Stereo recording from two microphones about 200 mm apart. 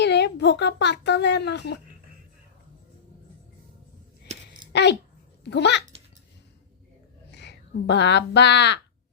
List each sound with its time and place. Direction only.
0.0 s speech: 60° left (ahead or behind)
4.7 s a sound: 60° left (ahead or behind)
5.5 s speech: 60° left (ahead or behind)
7.3 s speech: 60° left (ahead or behind)